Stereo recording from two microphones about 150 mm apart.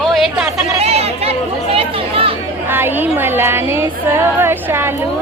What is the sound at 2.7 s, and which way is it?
Speech, 15° right (ahead or behind).